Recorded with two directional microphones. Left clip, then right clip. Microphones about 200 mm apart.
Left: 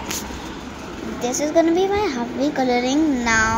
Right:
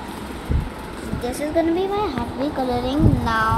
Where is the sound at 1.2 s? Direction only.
10° left (ahead or behind).